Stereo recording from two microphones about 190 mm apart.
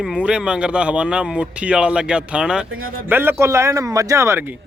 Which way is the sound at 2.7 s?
90° right.